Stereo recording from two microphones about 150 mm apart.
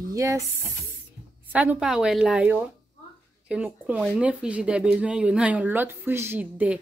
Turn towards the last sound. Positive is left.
turn(degrees=-10)  # may be behind; listen again after turning